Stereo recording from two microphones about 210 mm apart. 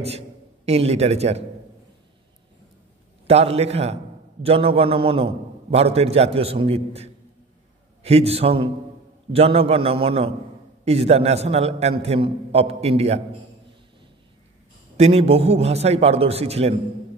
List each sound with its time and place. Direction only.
0.7 s a man's voice: 30° right (ahead or behind)
3.3 s a man's voice: 30° right (ahead or behind)
15.0 s a man's voice: 30° right (ahead or behind)